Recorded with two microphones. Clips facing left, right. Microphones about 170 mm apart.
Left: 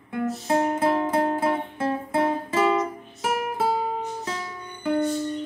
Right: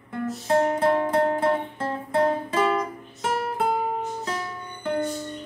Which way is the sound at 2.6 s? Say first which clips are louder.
Left 2 dB; 25° left (ahead or behind).